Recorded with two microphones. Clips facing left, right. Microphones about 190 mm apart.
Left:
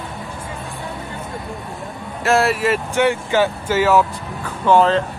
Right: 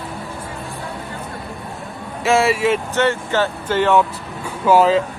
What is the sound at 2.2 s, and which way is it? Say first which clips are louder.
Speech: right 1 dB; centre (ahead or behind).